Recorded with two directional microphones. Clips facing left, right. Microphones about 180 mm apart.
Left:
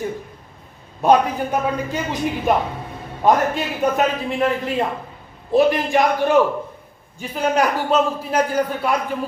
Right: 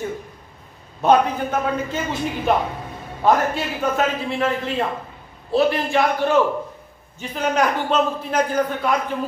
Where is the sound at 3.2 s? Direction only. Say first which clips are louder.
Left 1 dB; 15° left (ahead or behind).